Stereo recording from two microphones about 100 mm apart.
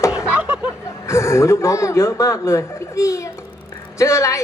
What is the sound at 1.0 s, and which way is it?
A woman's voice, 30° left (ahead or behind).